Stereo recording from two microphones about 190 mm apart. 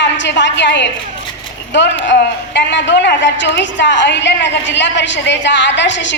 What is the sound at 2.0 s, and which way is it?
A woman's voice, 65° left (ahead or behind).